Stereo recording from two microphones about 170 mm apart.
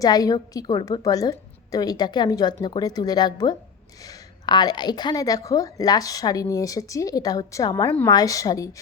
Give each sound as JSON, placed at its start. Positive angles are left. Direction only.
{"t": 0.0, "sound": "a woman's voice", "side_deg": 20}